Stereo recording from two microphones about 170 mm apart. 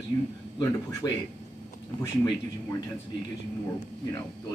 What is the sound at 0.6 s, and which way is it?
Speech, 20° left (ahead or behind).